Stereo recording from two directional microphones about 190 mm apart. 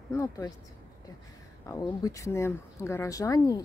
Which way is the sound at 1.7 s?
20° left (ahead or behind).